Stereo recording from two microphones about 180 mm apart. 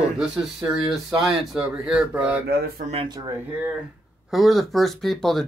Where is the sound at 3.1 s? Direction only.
20° right (ahead or behind).